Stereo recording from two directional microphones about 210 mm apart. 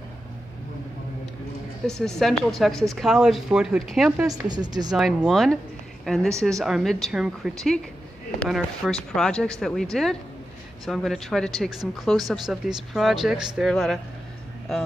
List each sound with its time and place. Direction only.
1.9 s speech: centre (ahead or behind)
4.3 s speech: 20° right (ahead or behind)
4.9 s speech: centre (ahead or behind)